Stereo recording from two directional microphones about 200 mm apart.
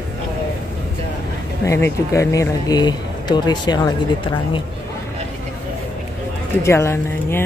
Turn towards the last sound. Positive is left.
turn(degrees=10)  # may be behind; listen again after turning